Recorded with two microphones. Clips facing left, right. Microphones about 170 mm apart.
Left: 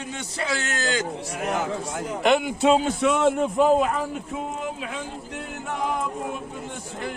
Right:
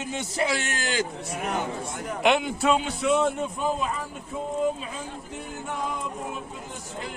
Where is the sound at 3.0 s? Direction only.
70° left (ahead or behind).